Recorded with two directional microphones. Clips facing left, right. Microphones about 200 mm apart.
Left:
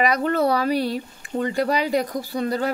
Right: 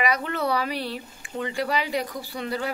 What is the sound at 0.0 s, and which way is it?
Speech, 40° left (ahead or behind).